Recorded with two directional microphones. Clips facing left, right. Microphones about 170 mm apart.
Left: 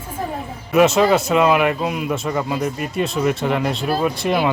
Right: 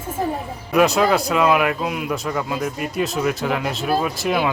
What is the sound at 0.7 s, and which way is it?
Speech, centre (ahead or behind).